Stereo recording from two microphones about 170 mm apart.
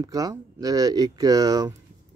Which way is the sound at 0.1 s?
20° right (ahead or behind).